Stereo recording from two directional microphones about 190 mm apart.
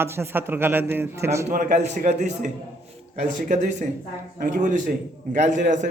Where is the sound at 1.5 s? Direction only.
40° right (ahead or behind).